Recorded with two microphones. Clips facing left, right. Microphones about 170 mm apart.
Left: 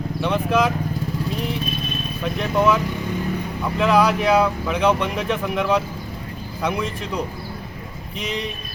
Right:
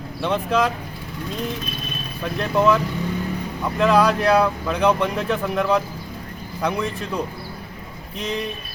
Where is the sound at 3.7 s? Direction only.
10° left (ahead or behind).